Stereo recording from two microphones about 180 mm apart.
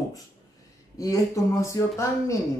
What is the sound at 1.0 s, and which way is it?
Speech, 15° left (ahead or behind).